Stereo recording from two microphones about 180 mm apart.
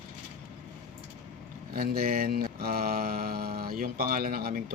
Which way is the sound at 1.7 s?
55° right (ahead or behind).